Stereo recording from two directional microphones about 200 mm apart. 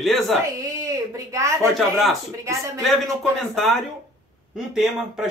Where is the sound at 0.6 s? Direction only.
15° right (ahead or behind).